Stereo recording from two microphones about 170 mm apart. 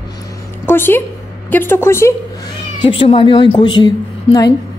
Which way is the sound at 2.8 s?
30° left (ahead or behind).